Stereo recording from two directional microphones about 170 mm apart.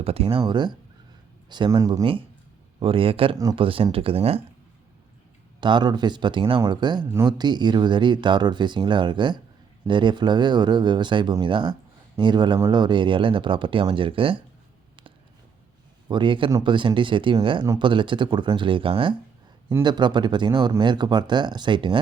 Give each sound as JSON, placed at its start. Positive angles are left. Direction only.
{"t": 0.0, "sound": "speech", "side_deg": -35}
{"t": 2.8, "sound": "speech", "side_deg": -30}
{"t": 5.5, "sound": "speech", "side_deg": -25}
{"t": 16.0, "sound": "speech", "side_deg": -30}